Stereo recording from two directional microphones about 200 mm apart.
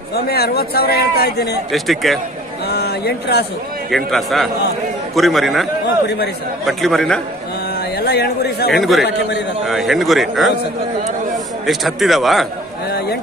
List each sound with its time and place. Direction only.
0.1 s a man's voice: 50° left (ahead or behind)
1.7 s a man's voice: centre (ahead or behind)
2.6 s a sound: 55° left (ahead or behind)
3.9 s a man's voice: centre (ahead or behind)
6.0 s a man's voice: 55° left (ahead or behind)
6.6 s a man's voice: centre (ahead or behind)
7.9 s a man's voice: 55° left (ahead or behind)
8.7 s a man's voice: centre (ahead or behind)